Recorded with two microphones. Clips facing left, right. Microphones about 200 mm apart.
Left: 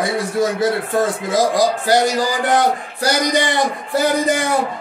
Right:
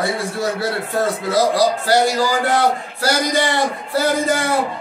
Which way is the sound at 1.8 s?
15° left (ahead or behind).